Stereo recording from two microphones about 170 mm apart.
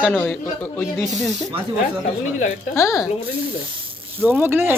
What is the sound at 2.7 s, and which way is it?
Speech, 15° left (ahead or behind).